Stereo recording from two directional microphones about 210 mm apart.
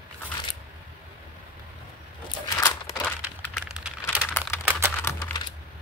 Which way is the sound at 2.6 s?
10° left (ahead or behind).